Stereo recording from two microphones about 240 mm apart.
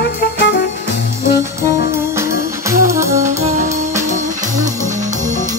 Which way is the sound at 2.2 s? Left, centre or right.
Centre.